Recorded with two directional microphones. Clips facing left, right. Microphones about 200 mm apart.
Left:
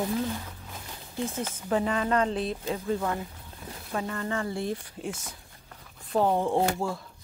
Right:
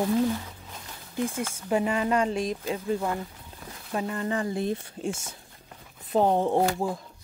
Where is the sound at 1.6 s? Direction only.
10° right (ahead or behind).